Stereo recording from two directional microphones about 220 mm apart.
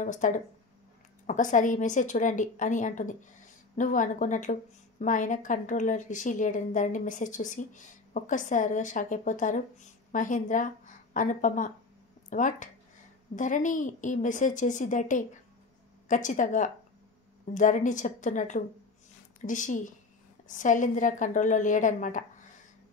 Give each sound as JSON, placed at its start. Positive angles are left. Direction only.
{"t": 0.0, "sound": "a woman's voice", "side_deg": 35}